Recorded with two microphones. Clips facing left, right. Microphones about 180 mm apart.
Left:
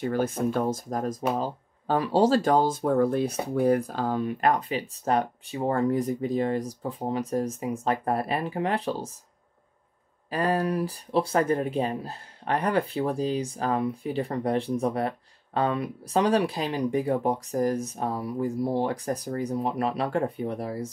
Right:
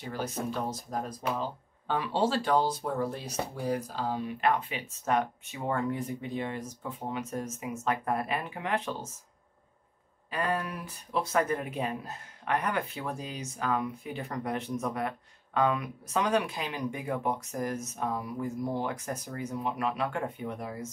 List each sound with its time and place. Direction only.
0.0 s speech: 55° left (ahead or behind); by 9.1 s 35° left (ahead or behind)
10.3 s speech: 35° left (ahead or behind)